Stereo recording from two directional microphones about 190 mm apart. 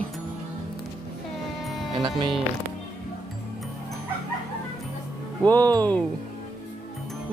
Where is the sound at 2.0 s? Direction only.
25° right (ahead or behind).